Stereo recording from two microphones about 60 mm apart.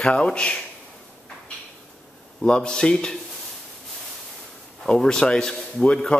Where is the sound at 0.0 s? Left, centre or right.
Centre.